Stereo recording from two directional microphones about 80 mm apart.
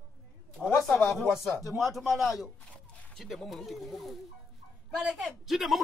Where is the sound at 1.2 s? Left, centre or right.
Centre.